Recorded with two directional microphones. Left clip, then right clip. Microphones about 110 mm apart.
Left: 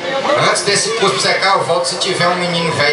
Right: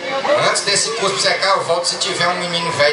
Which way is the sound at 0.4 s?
20° right (ahead or behind).